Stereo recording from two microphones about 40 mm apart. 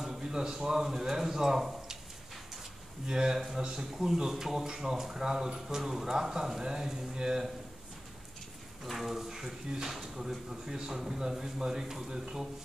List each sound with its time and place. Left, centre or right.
0.1 s speech: centre
3.1 s speech: centre
3.3 s speech: centre
8.9 s speech: centre